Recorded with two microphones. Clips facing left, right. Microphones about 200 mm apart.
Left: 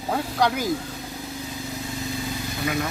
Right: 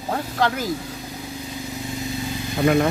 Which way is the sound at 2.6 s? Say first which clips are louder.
Right 10 dB; 55° right (ahead or behind).